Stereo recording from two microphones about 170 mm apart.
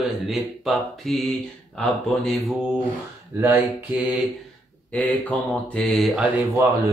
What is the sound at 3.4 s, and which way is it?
Speech, 10° right (ahead or behind).